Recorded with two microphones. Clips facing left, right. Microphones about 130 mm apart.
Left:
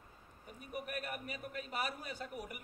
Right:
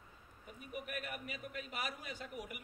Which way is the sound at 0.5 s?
40° left (ahead or behind).